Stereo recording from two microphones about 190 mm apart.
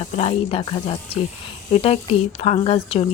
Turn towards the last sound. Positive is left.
turn(degrees=30)  # may be behind; listen again after turning